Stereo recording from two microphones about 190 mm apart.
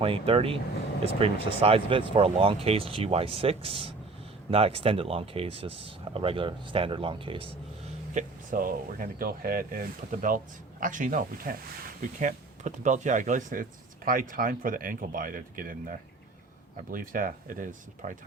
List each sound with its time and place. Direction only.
0.0 s speech: 30° right (ahead or behind)
8.1 s speech: 45° right (ahead or behind)
16.9 s speech: 45° right (ahead or behind)